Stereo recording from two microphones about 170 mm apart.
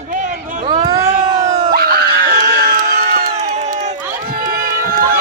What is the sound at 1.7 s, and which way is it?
Screaming, 60° right (ahead or behind).